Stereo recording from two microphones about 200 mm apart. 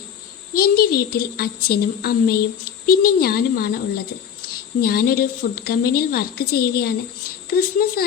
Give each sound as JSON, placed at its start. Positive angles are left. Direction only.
{"t": 0.5, "sound": "a child's voice", "side_deg": 50}